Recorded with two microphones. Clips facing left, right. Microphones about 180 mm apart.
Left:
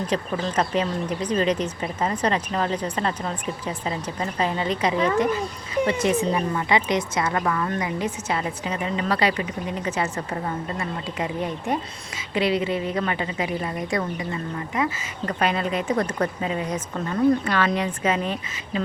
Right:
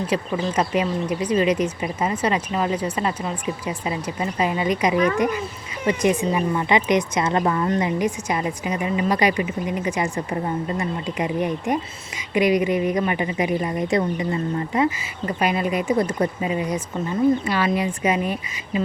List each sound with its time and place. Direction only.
0.1 s a woman's voice: 10° right (ahead or behind)
14.8 s a woman's voice: 10° right (ahead or behind)